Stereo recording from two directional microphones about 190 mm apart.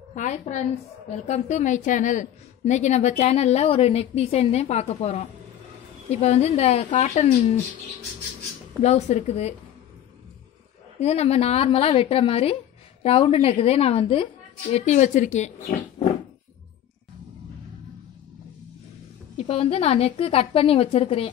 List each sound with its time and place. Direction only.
0.1 s a woman's voice: 40° left (ahead or behind)
8.8 s a woman's voice: 35° left (ahead or behind)
11.0 s a woman's voice: 35° left (ahead or behind)
19.3 s a woman's voice: 30° left (ahead or behind)